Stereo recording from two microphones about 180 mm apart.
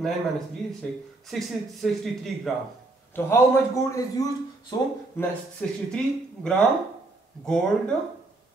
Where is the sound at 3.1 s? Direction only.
15° left (ahead or behind).